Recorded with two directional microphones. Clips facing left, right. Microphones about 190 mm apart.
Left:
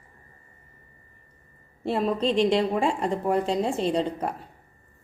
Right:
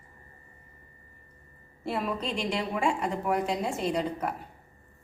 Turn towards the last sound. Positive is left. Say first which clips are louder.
# left 4 dB
turn(degrees=30)  # may be behind; listen again after turning